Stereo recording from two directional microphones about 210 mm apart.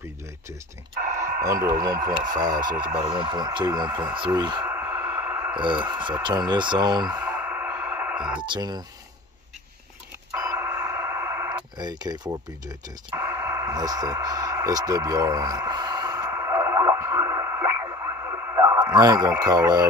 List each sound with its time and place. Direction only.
1.4 s speech: 15° right (ahead or behind)
4.4 s a sound: 20° right (ahead or behind)
5.5 s speech: 20° right (ahead or behind)
7.2 s music: 5° right (ahead or behind)
8.4 s speech: 20° right (ahead or behind)
10.3 s radio: 10° right (ahead or behind)